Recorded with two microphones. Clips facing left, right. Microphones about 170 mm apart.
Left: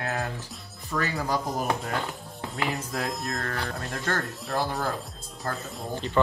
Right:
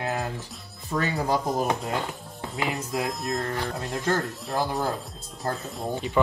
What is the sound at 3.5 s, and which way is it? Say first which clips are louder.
Speech: right 3 dB; 20° right (ahead or behind).